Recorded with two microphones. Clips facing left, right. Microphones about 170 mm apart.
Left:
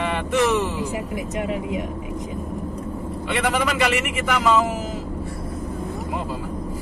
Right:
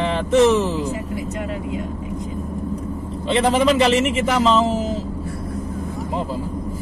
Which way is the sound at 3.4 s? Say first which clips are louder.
Right 6 dB; 25° right (ahead or behind).